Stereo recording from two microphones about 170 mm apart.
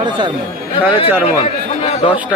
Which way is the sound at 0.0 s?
25° right (ahead or behind).